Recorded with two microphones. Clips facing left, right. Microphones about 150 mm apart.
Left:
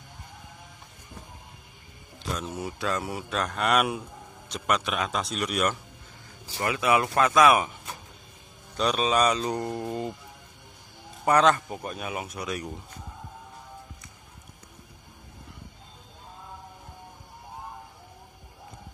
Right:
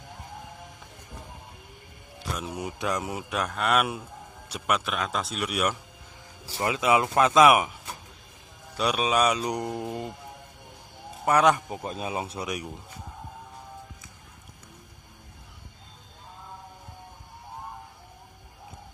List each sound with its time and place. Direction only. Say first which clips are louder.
2.1 s speech: left 1 dB; 10° right (ahead or behind)
3.5 s speech: left 1 dB; centre (ahead or behind)
6.6 s speech: right 1 dB; 20° right (ahead or behind)
11.2 s speech: even; 10° right (ahead or behind)
11.9 s speech: right 4 dB; 30° right (ahead or behind)
12.4 s speech: even; 15° right (ahead or behind)